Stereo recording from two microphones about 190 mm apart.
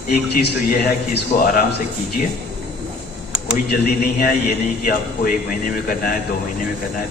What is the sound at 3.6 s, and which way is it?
Speech, 50° left (ahead or behind).